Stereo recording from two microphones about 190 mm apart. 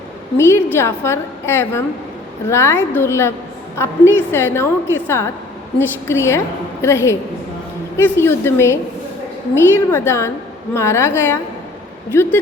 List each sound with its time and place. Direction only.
0.3 s a woman's voice: 15° left (ahead or behind)